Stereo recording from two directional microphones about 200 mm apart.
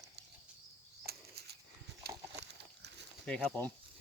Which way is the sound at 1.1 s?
55° right (ahead or behind).